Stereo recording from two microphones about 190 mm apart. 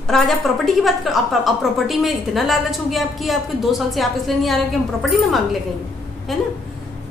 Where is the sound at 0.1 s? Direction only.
5° left (ahead or behind).